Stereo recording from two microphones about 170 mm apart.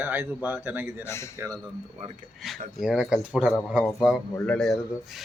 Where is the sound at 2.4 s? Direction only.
Centre (ahead or behind).